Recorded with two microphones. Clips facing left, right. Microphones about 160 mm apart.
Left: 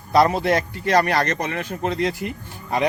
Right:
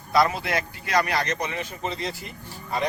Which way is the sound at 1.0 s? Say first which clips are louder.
Left 5 dB; 50° left (ahead or behind).